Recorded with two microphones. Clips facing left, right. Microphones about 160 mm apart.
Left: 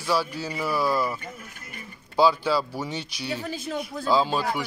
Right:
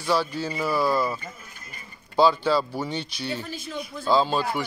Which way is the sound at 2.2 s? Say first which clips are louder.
Right 1 dB; 5° left (ahead or behind).